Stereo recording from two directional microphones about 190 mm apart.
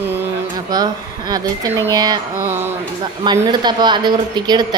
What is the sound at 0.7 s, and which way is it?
Speech, 20° right (ahead or behind).